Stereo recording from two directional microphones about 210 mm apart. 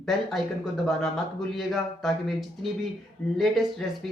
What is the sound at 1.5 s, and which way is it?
Speech, centre (ahead or behind).